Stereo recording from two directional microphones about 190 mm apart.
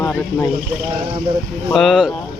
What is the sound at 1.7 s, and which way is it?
Speech, centre (ahead or behind).